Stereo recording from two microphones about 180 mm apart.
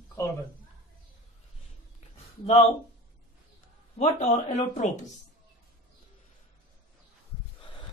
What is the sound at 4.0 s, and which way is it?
Speech, 40° left (ahead or behind).